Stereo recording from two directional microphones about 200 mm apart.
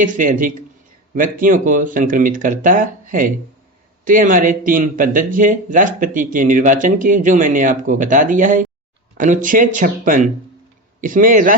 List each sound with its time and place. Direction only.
0.0 s a man's voice: 40° right (ahead or behind)